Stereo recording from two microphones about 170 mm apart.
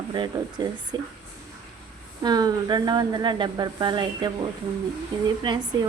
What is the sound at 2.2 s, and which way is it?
Speech, 25° right (ahead or behind).